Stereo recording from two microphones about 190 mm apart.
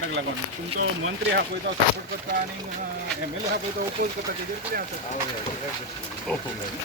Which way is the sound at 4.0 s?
50° right (ahead or behind).